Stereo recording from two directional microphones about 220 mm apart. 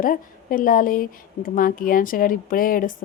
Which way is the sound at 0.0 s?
40° left (ahead or behind).